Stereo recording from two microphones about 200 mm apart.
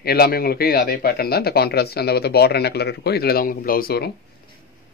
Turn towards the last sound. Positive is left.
turn(degrees=50)  # may be behind; listen again after turning